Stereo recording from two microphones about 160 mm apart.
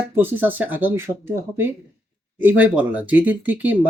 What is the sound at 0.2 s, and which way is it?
Speech, 10° right (ahead or behind).